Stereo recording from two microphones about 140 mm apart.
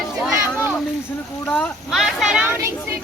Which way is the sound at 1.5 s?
10° left (ahead or behind).